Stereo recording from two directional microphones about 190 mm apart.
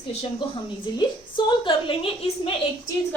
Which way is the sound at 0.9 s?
20° left (ahead or behind).